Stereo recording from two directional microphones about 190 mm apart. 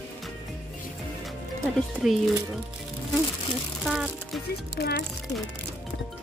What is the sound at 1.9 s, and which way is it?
Speech, centre (ahead or behind).